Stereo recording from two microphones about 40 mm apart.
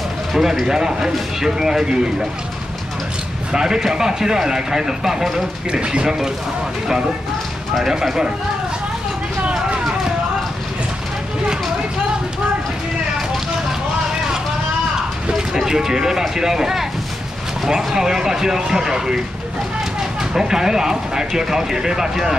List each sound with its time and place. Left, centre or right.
0.4 s speech: centre
3.5 s speech: centre
5.7 s speech: right
6.0 s speech: centre
7.8 s speech: centre
15.3 s speech: centre